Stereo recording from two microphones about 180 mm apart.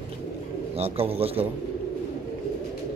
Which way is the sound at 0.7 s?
35° right (ahead or behind).